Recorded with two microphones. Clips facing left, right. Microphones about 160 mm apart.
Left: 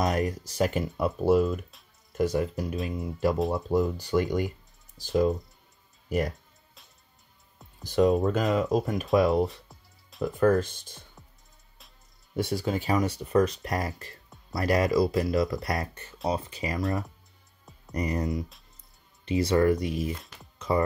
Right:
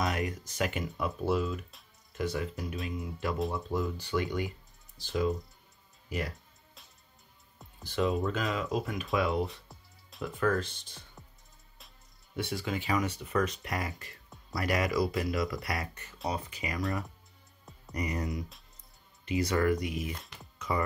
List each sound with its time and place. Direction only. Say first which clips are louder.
0.0 s speech: left 6 dB; 40° left (ahead or behind)
7.8 s speech: left 7 dB; 40° left (ahead or behind)
9.5 s music: left 1 dB; centre (ahead or behind)
10.2 s speech: left 7 dB; 40° left (ahead or behind)
12.4 s speech: left 6 dB; 40° left (ahead or behind)
17.9 s speech: left 5 dB; 30° left (ahead or behind)
20.2 s speech: left 1 dB; centre (ahead or behind)
20.5 s music: left 6 dB; 30° left (ahead or behind)